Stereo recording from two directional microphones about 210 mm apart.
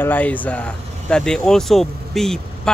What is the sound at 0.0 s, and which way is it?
Speech, 10° left (ahead or behind).